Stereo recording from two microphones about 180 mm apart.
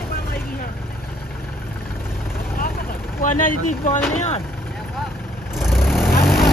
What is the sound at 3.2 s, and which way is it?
Speech, 45° left (ahead or behind).